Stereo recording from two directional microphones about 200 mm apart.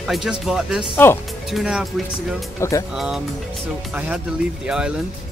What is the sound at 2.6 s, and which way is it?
Speech, 15° left (ahead or behind).